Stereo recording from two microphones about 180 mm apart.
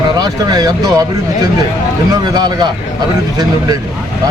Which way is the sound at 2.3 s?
25° right (ahead or behind).